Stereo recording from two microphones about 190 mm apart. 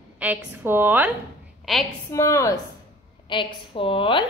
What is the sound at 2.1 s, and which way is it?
Speech, 15° left (ahead or behind).